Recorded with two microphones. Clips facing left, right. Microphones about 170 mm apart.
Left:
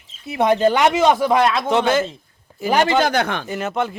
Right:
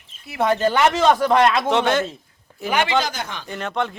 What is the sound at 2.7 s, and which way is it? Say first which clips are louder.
Speech: left 4 dB; 40° left (ahead or behind).